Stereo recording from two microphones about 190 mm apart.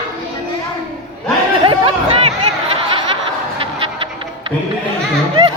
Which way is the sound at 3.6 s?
30° right (ahead or behind).